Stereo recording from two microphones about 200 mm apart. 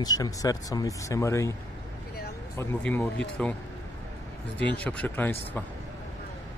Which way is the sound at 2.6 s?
10° left (ahead or behind).